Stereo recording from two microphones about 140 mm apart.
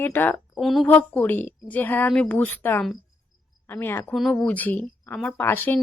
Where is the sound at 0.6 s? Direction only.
Centre (ahead or behind).